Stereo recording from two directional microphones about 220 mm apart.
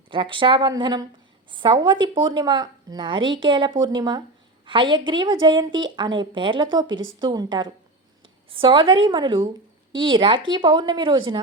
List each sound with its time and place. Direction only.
0.1 s a woman's voice: 20° right (ahead or behind)